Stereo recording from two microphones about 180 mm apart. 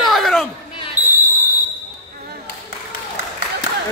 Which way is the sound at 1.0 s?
10° right (ahead or behind).